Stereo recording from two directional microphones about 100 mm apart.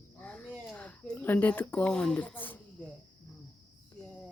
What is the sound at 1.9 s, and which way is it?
Snake, 10° left (ahead or behind).